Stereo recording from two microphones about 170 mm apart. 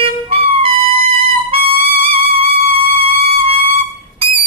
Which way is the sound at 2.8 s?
35° right (ahead or behind).